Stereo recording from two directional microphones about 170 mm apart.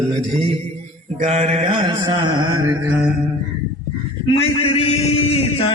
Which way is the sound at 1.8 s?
25° right (ahead or behind).